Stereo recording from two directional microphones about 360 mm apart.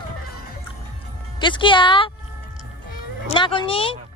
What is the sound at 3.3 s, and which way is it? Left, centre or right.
Speech, centre.